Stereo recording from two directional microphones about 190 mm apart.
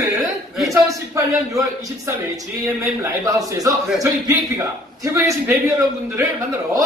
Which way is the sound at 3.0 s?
15° right (ahead or behind).